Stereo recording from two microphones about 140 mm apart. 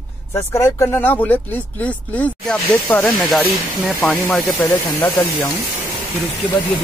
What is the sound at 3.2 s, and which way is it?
Speech, centre (ahead or behind).